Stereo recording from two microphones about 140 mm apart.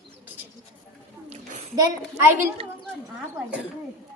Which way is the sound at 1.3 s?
55° right (ahead or behind).